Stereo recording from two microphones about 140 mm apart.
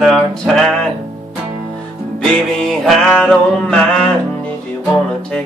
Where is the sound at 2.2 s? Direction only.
5° left (ahead or behind).